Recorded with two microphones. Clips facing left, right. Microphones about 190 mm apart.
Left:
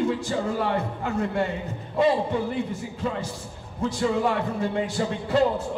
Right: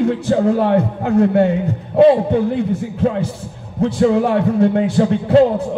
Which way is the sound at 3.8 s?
60° right (ahead or behind).